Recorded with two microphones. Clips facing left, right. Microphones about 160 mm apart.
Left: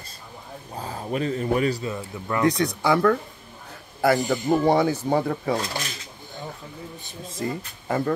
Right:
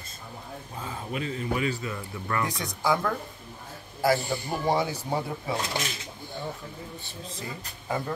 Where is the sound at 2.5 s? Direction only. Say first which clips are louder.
Left 9 dB; 75° left (ahead or behind).